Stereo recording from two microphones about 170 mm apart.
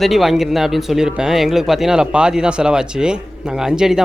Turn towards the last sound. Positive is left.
turn(degrees=-5)  # may be behind; listen again after turning